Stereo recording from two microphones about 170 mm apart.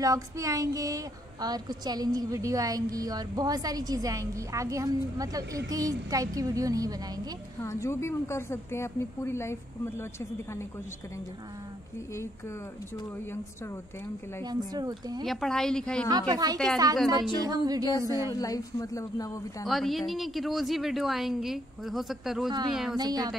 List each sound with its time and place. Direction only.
0.0 s a woman's voice: 20° right (ahead or behind)
7.6 s a woman's voice: 15° left (ahead or behind)
14.4 s a woman's voice: 25° right (ahead or behind)
15.2 s a woman's voice: centre (ahead or behind)
16.1 s a woman's voice: 20° right (ahead or behind)
18.3 s speech: 20° left (ahead or behind)
19.6 s a woman's voice: centre (ahead or behind)
22.9 s a woman's voice: 25° right (ahead or behind)